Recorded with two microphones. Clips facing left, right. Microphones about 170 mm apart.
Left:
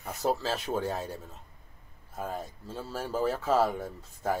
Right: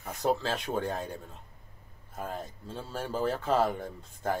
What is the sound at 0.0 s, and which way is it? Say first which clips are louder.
Speech: even; 5° left (ahead or behind).